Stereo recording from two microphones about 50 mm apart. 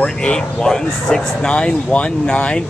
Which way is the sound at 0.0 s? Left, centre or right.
Centre.